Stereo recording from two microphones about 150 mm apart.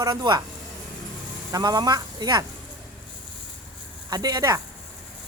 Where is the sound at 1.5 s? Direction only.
25° right (ahead or behind).